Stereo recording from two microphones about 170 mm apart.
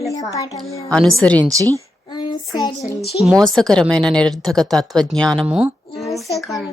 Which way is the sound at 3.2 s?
5° left (ahead or behind).